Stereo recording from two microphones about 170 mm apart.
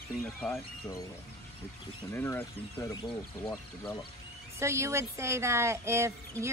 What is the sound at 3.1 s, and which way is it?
Speech, 10° left (ahead or behind).